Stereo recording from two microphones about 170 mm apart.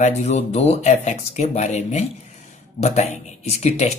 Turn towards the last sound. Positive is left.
turn(degrees=40)  # may be behind; listen again after turning